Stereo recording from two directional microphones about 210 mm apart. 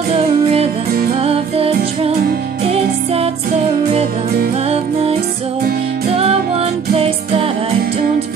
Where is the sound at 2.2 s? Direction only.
45° right (ahead or behind).